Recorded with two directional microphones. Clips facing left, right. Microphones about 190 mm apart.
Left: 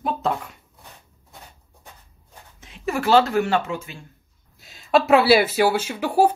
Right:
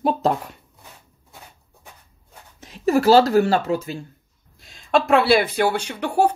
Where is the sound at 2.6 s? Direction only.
40° right (ahead or behind).